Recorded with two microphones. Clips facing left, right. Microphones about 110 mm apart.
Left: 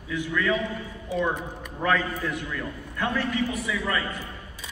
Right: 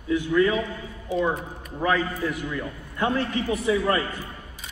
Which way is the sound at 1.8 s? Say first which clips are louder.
Right 1 dB; 10° right (ahead or behind).